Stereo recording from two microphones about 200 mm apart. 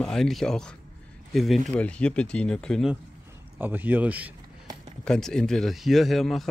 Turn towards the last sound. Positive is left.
turn(degrees=0)  # may be behind; listen again after turning